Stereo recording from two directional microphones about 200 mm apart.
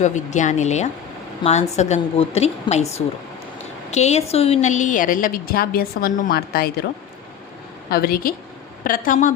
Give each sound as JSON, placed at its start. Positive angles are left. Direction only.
{"t": 0.0, "sound": "a woman's voice", "side_deg": 35}
{"t": 3.9, "sound": "a woman's voice", "side_deg": 35}
{"t": 7.9, "sound": "a woman's voice", "side_deg": 50}